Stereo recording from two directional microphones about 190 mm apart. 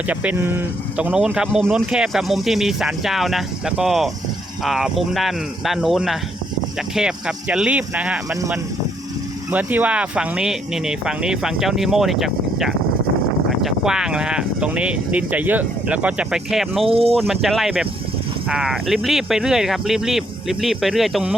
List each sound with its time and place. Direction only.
0.1 s speech: 5° right (ahead or behind)
9.5 s speech: 10° right (ahead or behind)
16.9 s speech: 30° right (ahead or behind)
17.2 s speech: centre (ahead or behind)